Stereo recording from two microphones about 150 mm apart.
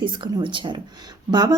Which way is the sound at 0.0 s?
35° right (ahead or behind).